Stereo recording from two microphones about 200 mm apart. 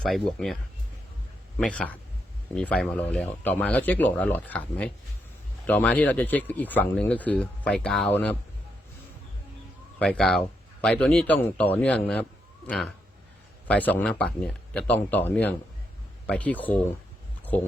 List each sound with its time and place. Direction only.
0.0 s speech: 5° left (ahead or behind)
10.0 s speech: 5° left (ahead or behind)